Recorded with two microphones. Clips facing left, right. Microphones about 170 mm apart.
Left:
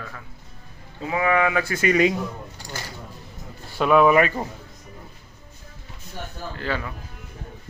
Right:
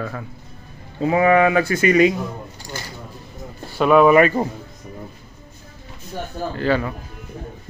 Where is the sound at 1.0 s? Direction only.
50° right (ahead or behind).